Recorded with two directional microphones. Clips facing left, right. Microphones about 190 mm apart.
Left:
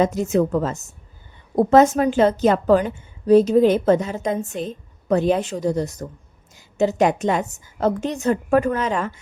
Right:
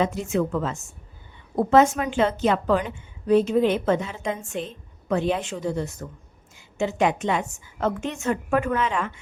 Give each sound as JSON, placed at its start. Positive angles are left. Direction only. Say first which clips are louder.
{"t": 0.0, "sound": "a woman's voice", "louder": "left 5 dB", "side_deg": 40}